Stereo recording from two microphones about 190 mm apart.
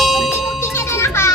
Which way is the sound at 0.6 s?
15° left (ahead or behind).